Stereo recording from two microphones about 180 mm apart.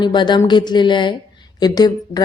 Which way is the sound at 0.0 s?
25° left (ahead or behind).